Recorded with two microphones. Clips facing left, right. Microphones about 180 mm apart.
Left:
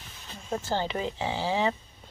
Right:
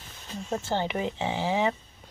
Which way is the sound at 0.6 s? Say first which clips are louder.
Even; 20° right (ahead or behind).